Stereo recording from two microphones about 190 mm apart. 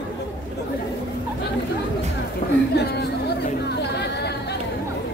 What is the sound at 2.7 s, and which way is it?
Speech, 60° left (ahead or behind).